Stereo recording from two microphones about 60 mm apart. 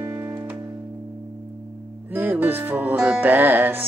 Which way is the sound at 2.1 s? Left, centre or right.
Right.